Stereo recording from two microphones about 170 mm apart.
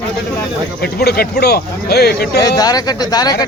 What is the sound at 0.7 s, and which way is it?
Speech, 70° left (ahead or behind).